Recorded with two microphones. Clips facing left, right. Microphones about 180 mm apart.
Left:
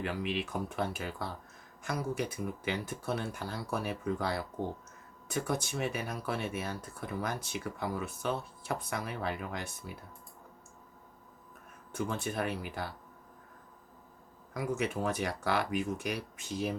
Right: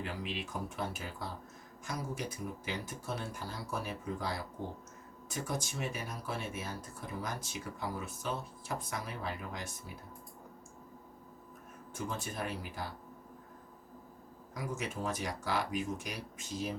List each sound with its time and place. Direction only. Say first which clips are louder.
0.0 s speech: left 5 dB; 60° left (ahead or behind)
11.9 s speech: left 5 dB; 60° left (ahead or behind)
14.5 s speech: left 6 dB; 60° left (ahead or behind)